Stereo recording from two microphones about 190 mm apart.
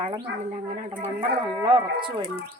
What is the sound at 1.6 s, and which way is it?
Speech, 25° right (ahead or behind).